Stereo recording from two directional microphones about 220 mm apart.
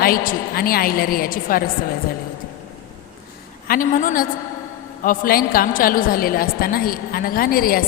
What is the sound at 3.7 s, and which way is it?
A woman's voice, 35° left (ahead or behind).